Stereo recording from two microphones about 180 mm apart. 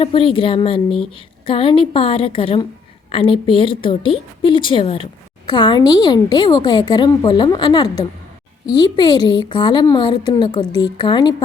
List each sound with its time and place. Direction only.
0.0 s a woman's voice: 30° left (ahead or behind)